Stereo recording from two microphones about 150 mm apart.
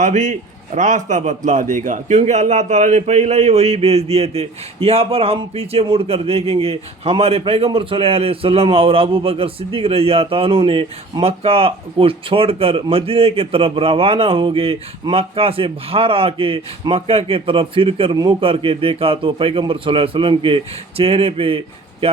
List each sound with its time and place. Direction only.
0.0 s a man's voice: 55° right (ahead or behind); by 22.2 s 40° right (ahead or behind)